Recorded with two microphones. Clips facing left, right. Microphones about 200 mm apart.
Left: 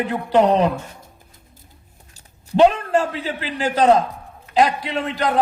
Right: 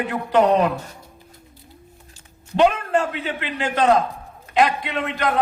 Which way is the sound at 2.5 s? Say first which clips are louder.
Left 3 dB; 35° left (ahead or behind).